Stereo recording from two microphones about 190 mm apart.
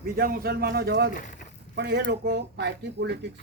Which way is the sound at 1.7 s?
60° right (ahead or behind).